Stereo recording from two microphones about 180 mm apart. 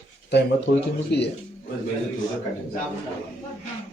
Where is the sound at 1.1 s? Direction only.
70° left (ahead or behind).